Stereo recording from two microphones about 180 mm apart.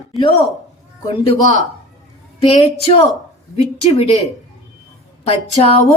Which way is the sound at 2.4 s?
30° left (ahead or behind).